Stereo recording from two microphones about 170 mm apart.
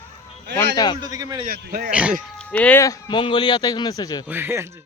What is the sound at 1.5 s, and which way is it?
Speech, 60° right (ahead or behind).